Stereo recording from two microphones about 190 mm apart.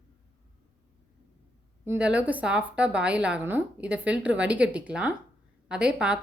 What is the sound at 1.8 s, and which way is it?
A woman's voice, 10° right (ahead or behind).